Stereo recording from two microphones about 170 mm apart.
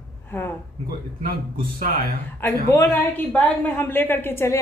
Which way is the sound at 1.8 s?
55° right (ahead or behind).